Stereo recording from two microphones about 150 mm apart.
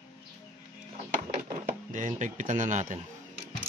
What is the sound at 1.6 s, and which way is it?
Speech, 60° right (ahead or behind).